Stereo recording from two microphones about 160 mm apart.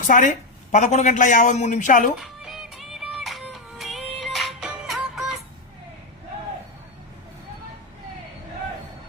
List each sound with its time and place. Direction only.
0.0 s speech: 55° left (ahead or behind)
2.4 s music: 5° right (ahead or behind)